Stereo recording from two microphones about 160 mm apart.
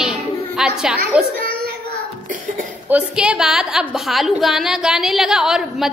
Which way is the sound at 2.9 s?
5° right (ahead or behind).